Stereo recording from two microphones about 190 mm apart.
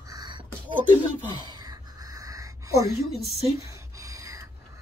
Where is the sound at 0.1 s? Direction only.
25° right (ahead or behind).